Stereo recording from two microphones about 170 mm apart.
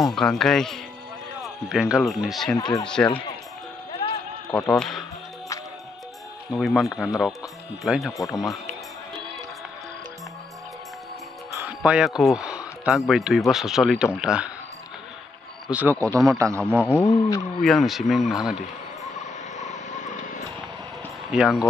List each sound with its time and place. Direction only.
0.0 s a man's voice: 5° left (ahead or behind)
2.5 s speech: 25° left (ahead or behind)
2.9 s a man's voice: 5° left (ahead or behind)
4.5 s a man's voice: 5° left (ahead or behind)
6.5 s a man's voice: centre (ahead or behind)
11.8 s a man's voice: 5° right (ahead or behind)
15.7 s speech: 15° right (ahead or behind)
16.1 s a man's voice: centre (ahead or behind)
16.3 s speech: 20° right (ahead or behind)
16.8 s speech: 15° left (ahead or behind)
17.6 s a man's voice: centre (ahead or behind)
19.5 s a sound: 45° left (ahead or behind)
21.3 s speech: 5° right (ahead or behind)